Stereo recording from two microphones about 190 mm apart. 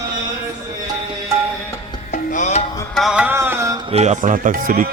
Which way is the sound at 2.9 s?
Centre (ahead or behind).